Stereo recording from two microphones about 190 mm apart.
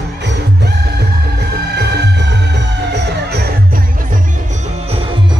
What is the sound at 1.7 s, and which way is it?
Music, 60° right (ahead or behind).